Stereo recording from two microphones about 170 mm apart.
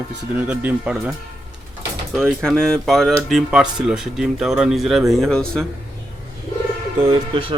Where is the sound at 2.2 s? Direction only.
5° left (ahead or behind).